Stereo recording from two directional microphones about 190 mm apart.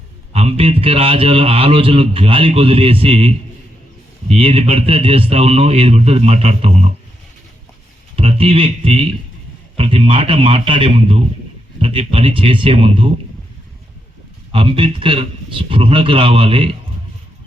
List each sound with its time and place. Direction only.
0.3 s a man's voice: 30° right (ahead or behind)
8.1 s a man's voice: 30° right (ahead or behind)
14.5 s a man's voice: 30° right (ahead or behind)